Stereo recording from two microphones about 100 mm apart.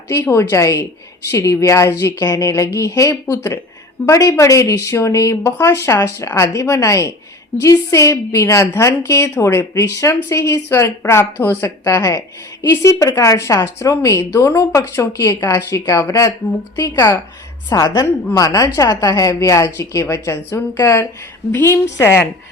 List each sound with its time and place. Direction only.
0.1 s speech: 30° left (ahead or behind)
17.7 s speech: 35° left (ahead or behind)